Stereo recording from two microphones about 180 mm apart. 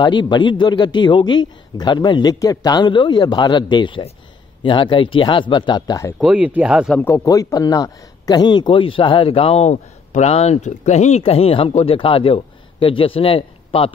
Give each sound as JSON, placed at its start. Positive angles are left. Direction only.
{"t": 0.0, "sound": "a man's voice", "side_deg": 25}
{"t": 6.1, "sound": "speech", "side_deg": -5}
{"t": 7.0, "sound": "speech", "side_deg": 10}